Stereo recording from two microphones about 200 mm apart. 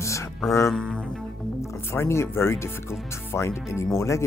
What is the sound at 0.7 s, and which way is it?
Speech, 5° left (ahead or behind).